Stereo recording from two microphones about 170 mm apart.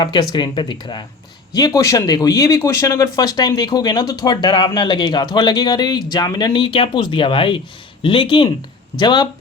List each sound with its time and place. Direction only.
0.0 s speech: 25° left (ahead or behind)